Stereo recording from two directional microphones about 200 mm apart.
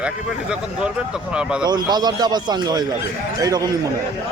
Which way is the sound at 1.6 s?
20° right (ahead or behind).